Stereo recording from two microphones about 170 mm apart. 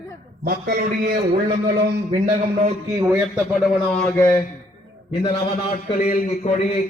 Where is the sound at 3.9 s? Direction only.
10° left (ahead or behind).